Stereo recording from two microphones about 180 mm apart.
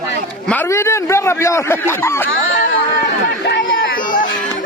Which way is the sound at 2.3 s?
90° left.